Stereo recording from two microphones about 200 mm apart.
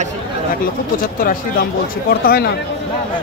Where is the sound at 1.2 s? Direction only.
45° left (ahead or behind).